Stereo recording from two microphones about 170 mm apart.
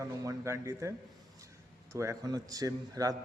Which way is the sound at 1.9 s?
15° right (ahead or behind).